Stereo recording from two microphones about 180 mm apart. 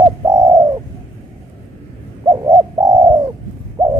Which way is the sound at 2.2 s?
20° right (ahead or behind).